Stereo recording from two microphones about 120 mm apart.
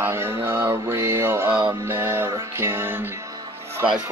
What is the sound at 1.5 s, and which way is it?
Music, 5° right (ahead or behind).